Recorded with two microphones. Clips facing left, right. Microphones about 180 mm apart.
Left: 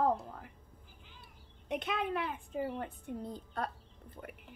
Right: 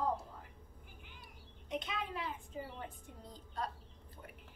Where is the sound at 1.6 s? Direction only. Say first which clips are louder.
Left 6 dB; 65° left (ahead or behind).